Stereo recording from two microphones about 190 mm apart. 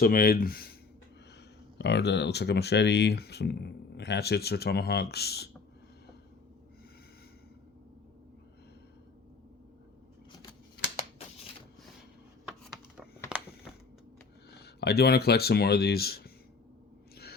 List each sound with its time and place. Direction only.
0.0 s speech: 50° left (ahead or behind)
1.8 s speech: 65° left (ahead or behind)
12.5 s a sound: 5° right (ahead or behind)
14.5 s speech: 60° left (ahead or behind)